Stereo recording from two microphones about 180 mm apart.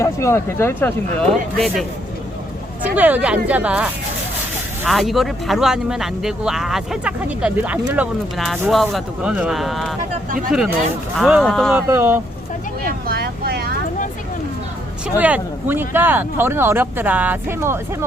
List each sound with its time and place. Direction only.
0.0 s speech: 15° left (ahead or behind)
2.9 s speech: 10° right (ahead or behind)
11.2 s speech: centre (ahead or behind)
11.9 s speech: 10° right (ahead or behind)
13.1 s speech: 60° right (ahead or behind)
15.2 s speech: 10° right (ahead or behind)